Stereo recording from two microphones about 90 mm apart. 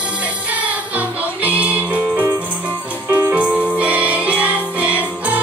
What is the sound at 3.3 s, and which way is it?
Music, 15° right (ahead or behind).